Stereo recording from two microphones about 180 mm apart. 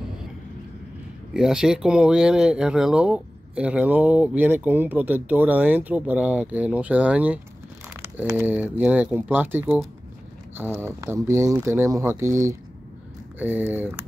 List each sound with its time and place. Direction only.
1.3 s speech: 5° right (ahead or behind)
10.8 s speech: 15° right (ahead or behind)